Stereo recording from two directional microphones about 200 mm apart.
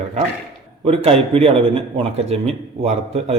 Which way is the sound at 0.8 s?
30° right (ahead or behind).